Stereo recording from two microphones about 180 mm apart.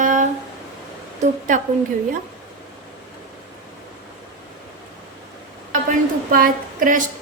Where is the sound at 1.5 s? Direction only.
45° right (ahead or behind).